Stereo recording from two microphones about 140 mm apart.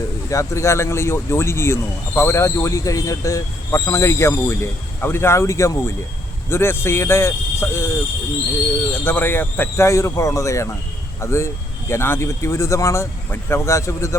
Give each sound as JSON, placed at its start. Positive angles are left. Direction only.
{"t": 0.3, "sound": "speech", "side_deg": 20}